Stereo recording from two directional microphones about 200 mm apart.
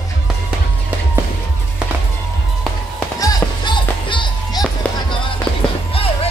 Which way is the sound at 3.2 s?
20° left (ahead or behind).